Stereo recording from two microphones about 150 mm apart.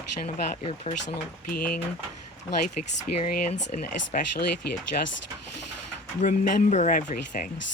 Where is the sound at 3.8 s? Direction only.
90° left.